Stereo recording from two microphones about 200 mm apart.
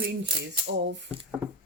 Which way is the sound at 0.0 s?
50° right (ahead or behind).